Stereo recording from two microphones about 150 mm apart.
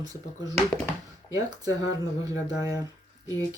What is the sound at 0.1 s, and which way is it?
Speech, 25° right (ahead or behind).